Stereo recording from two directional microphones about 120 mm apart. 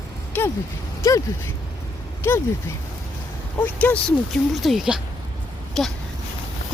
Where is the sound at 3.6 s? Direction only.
15° left (ahead or behind).